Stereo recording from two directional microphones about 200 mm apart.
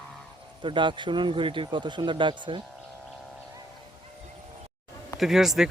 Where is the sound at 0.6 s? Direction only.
25° right (ahead or behind).